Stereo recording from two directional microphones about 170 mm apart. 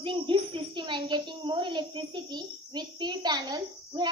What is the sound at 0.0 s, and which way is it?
A woman's voice, 30° right (ahead or behind).